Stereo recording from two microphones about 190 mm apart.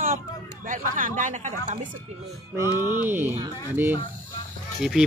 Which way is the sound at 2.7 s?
20° left (ahead or behind).